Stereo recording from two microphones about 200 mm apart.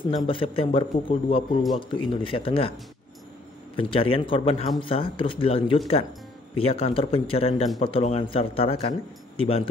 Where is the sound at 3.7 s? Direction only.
25° left (ahead or behind).